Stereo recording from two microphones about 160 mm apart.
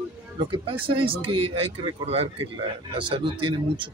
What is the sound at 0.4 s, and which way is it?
Speech, 35° right (ahead or behind).